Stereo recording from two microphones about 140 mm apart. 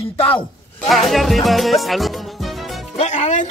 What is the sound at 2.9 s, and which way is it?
Music, 55° left (ahead or behind).